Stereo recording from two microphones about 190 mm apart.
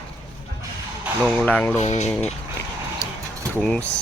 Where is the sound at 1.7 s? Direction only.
35° left (ahead or behind).